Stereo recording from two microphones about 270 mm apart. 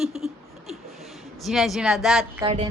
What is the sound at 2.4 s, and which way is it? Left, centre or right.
Speech, right.